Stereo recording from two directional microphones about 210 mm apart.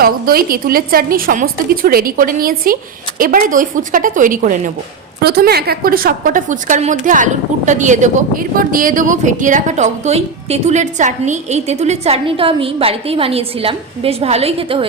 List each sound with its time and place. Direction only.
0.0 s a woman's voice: 45° right (ahead or behind); by 14.8 s 25° right (ahead or behind)